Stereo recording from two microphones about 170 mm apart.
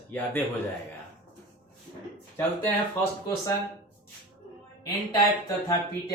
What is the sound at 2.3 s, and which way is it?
Speech, 15° left (ahead or behind).